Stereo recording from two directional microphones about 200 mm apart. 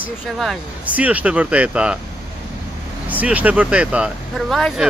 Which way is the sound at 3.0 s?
10° right (ahead or behind).